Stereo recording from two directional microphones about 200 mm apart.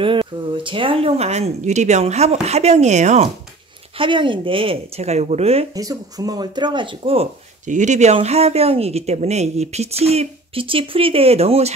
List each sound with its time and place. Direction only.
0.0 s speech: 25° right (ahead or behind)
4.0 s speech: 25° right (ahead or behind)
5.8 s speech: 20° right (ahead or behind)